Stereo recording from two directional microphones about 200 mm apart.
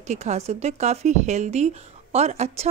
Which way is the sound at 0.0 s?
35° right (ahead or behind).